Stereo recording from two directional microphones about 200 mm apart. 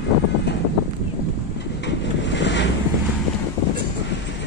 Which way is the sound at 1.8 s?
65° left (ahead or behind).